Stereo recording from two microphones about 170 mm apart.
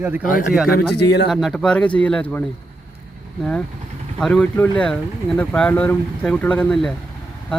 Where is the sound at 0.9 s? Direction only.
80° left.